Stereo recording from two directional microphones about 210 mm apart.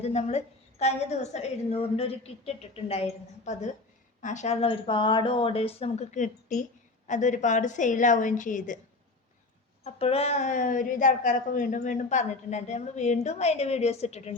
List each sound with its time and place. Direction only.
0.0 s a woman's voice: 30° left (ahead or behind)
9.8 s a woman's voice: 30° left (ahead or behind)